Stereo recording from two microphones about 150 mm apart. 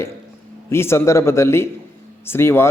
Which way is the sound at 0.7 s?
15° left (ahead or behind).